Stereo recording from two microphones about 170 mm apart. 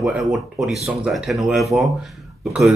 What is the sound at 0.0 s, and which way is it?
A man's voice, centre (ahead or behind).